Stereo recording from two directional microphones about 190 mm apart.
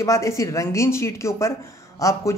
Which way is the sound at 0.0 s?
15° left (ahead or behind).